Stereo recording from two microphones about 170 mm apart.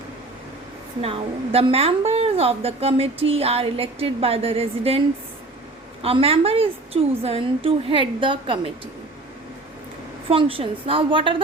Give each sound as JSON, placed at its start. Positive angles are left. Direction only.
{"t": 1.0, "sound": "a woman's voice", "side_deg": -35}
{"t": 10.2, "sound": "a woman's voice", "side_deg": -35}